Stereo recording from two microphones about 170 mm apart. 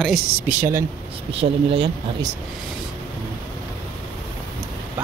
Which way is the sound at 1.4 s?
35° right (ahead or behind).